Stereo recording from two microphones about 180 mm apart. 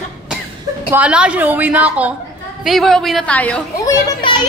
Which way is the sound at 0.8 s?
5° right (ahead or behind).